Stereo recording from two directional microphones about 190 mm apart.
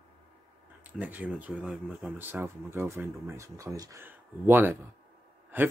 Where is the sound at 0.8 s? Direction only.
10° right (ahead or behind).